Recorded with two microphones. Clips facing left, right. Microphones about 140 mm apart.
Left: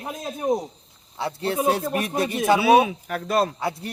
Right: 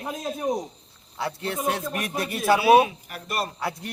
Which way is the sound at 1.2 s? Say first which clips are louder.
Left 4 dB; 25° left (ahead or behind).